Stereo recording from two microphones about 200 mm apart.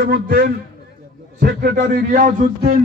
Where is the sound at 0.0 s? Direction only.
50° right (ahead or behind).